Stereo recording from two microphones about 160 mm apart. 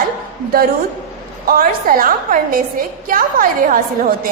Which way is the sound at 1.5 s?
65° right (ahead or behind).